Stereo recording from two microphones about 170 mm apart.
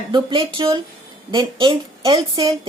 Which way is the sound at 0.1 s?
30° right (ahead or behind).